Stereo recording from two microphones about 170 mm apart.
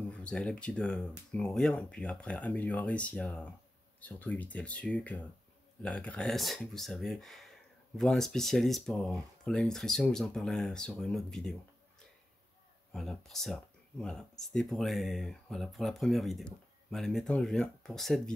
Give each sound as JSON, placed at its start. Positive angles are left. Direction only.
{"t": 0.1, "sound": "speech", "side_deg": 5}
{"t": 12.9, "sound": "speech", "side_deg": 0}